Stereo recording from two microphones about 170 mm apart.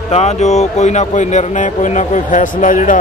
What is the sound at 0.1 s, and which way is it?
A man's voice, 40° left (ahead or behind).